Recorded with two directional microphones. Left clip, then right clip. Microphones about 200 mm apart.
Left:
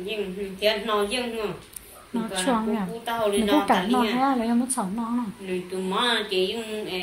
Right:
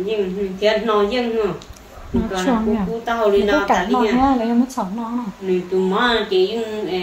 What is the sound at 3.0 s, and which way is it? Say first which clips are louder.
Speech: right 8 dB; 20° right (ahead or behind).